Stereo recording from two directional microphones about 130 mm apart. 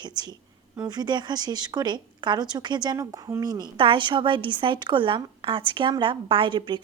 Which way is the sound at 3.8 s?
40° right (ahead or behind).